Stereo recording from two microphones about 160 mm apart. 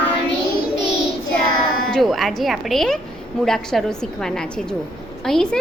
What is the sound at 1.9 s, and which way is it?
A woman's voice, centre (ahead or behind).